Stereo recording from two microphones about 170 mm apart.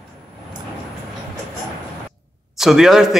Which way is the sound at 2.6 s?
Centre (ahead or behind).